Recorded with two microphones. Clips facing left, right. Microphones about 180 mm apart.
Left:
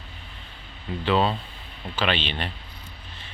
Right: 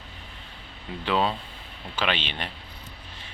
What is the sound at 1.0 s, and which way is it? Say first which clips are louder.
Speech: left 3 dB; 5° right (ahead or behind).